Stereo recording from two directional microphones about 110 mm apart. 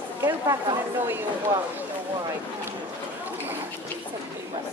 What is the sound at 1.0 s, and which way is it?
Speech, 20° right (ahead or behind).